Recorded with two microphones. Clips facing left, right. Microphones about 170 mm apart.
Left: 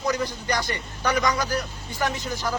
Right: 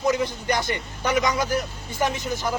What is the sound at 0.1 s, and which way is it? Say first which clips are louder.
A man's voice: right 2 dB; 20° right (ahead or behind).